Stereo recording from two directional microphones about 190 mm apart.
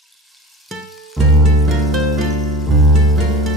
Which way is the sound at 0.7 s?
Centre (ahead or behind).